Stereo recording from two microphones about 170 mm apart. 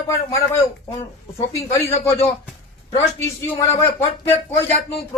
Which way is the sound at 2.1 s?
15° left (ahead or behind).